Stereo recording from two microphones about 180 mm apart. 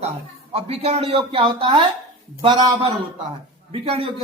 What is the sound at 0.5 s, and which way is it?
A woman's voice, 35° right (ahead or behind).